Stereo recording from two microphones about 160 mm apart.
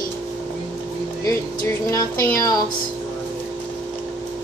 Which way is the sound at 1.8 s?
20° left (ahead or behind).